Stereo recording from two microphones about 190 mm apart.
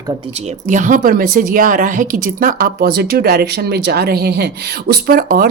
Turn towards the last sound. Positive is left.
turn(degrees=-50)  # may be behind; listen again after turning